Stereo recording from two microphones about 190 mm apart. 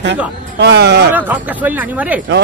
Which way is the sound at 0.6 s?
65° right (ahead or behind).